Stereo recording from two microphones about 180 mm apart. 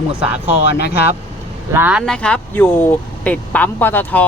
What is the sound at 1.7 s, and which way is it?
Speech, 10° right (ahead or behind).